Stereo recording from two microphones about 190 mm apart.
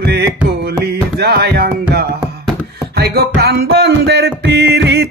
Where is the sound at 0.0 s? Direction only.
60° right (ahead or behind).